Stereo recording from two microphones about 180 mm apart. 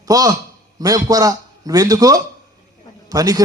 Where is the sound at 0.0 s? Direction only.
20° right (ahead or behind).